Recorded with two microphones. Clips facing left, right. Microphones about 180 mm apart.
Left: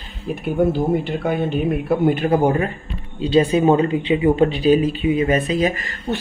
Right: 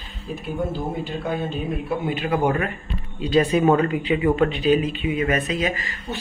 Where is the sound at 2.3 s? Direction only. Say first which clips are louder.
Left 4 dB; 30° left (ahead or behind).